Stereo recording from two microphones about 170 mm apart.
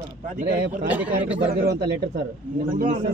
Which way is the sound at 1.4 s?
70° right (ahead or behind).